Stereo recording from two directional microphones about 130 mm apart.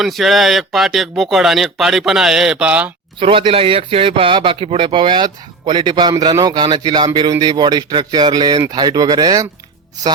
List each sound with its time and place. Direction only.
0.0 s speech: centre (ahead or behind)
3.2 s a man's voice: 45° right (ahead or behind)